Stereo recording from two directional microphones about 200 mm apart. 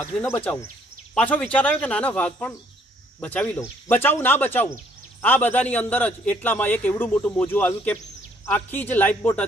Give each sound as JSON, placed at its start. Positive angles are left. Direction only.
{"t": 0.0, "sound": "a man's voice", "side_deg": 10}